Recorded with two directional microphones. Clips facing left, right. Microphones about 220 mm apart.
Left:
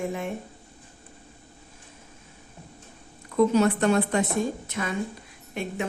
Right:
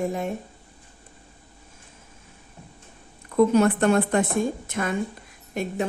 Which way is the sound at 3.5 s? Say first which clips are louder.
Right 2 dB; 55° right (ahead or behind).